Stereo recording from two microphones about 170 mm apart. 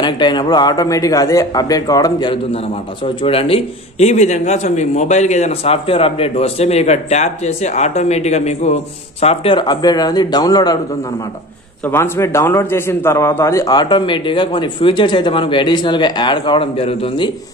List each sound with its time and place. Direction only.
0.0 s a man's voice: 25° left (ahead or behind)
11.8 s a man's voice: 15° left (ahead or behind); by 17.3 s 35° left (ahead or behind)